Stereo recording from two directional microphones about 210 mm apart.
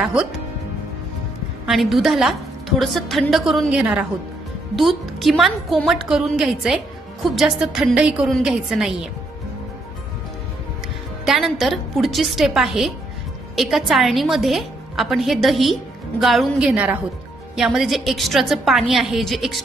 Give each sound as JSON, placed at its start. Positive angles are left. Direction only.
{"t": 0.0, "sound": "a woman's voice", "side_deg": -5}
{"t": 1.7, "sound": "a woman's voice", "side_deg": 0}
{"t": 11.2, "sound": "a woman's voice", "side_deg": 0}